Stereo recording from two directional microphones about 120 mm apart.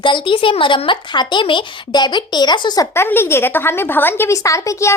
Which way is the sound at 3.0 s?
20° left (ahead or behind).